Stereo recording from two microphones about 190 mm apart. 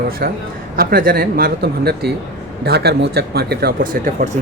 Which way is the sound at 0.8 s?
50° right (ahead or behind).